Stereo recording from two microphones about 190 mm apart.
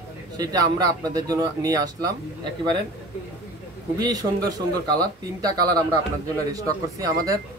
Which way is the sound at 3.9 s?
20° right (ahead or behind).